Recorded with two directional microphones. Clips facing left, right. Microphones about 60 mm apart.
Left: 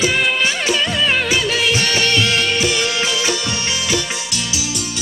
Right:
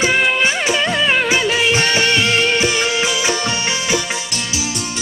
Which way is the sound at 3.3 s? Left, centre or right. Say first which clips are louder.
Right 2 dB; right.